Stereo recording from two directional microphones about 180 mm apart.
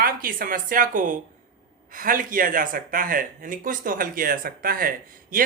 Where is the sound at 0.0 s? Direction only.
50° right (ahead or behind).